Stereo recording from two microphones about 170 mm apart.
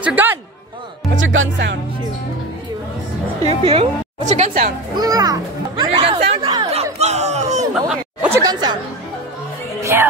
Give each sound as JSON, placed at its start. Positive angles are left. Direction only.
{"t": 0.0, "sound": "a man's voice", "side_deg": -10}
{"t": 1.1, "sound": "speech", "side_deg": -85}
{"t": 3.4, "sound": "a woman's voice", "side_deg": -35}
{"t": 4.9, "sound": "a child's voice", "side_deg": -20}
{"t": 5.9, "sound": "chatter", "side_deg": -35}
{"t": 7.9, "sound": "chatter", "side_deg": -10}
{"t": 8.4, "sound": "speech", "side_deg": -25}
{"t": 9.8, "sound": "music", "side_deg": -15}